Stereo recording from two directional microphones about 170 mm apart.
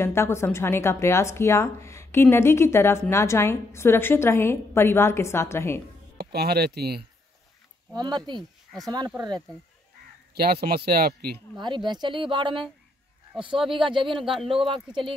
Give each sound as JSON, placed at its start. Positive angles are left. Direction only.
{"t": 0.0, "sound": "a woman's voice", "side_deg": 15}
{"t": 6.1, "sound": "speech", "side_deg": -70}
{"t": 7.9, "sound": "speech", "side_deg": -25}
{"t": 8.4, "sound": "speech", "side_deg": 0}
{"t": 10.3, "sound": "speech", "side_deg": -65}
{"t": 11.6, "sound": "speech", "side_deg": -25}
{"t": 13.7, "sound": "speech", "side_deg": -30}